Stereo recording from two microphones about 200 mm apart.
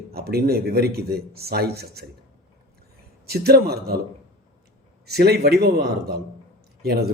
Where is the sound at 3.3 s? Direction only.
50° right (ahead or behind).